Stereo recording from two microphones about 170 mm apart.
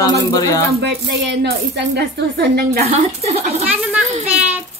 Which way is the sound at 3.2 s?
40° right (ahead or behind).